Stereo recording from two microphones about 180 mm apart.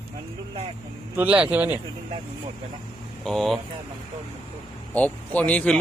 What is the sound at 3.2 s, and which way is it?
Speech, centre (ahead or behind).